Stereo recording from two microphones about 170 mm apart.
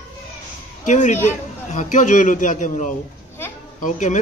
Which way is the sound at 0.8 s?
45° left (ahead or behind).